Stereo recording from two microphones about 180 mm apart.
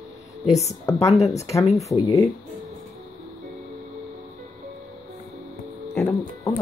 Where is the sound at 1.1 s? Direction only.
Centre (ahead or behind).